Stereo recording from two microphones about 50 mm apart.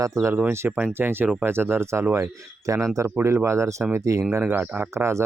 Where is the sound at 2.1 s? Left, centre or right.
Right.